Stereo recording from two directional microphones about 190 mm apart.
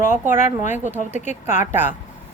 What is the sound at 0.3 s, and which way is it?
Speech, 40° left (ahead or behind).